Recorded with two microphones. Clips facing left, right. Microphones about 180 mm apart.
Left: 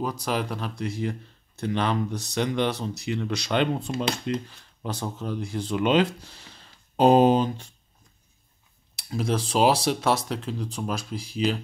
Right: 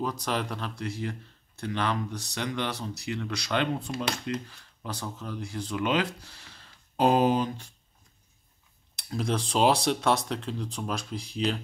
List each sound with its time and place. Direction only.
0.0 s speech: 10° left (ahead or behind); by 7.6 s 25° left (ahead or behind)
8.9 s speech: 5° left (ahead or behind)